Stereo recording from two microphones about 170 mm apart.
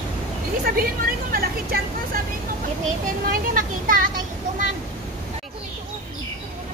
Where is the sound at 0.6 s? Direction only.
60° right (ahead or behind).